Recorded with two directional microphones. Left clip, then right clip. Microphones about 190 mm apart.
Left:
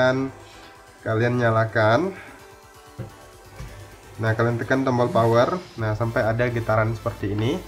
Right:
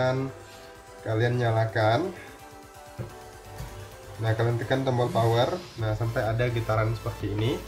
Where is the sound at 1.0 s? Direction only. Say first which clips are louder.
Left 5 dB; 25° left (ahead or behind).